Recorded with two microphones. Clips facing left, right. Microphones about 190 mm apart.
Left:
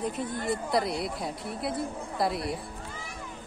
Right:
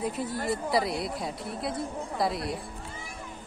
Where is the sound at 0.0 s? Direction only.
5° right (ahead or behind).